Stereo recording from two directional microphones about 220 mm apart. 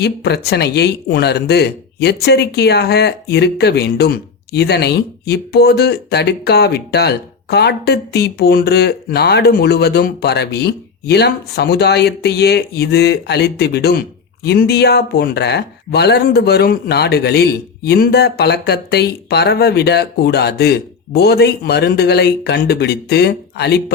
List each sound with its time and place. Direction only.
0.0 s speech: 50° left (ahead or behind)